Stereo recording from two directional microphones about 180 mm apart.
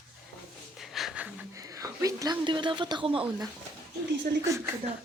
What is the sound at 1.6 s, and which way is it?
A woman's voice, 20° right (ahead or behind).